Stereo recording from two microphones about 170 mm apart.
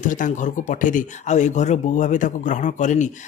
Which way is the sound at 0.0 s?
50° left (ahead or behind).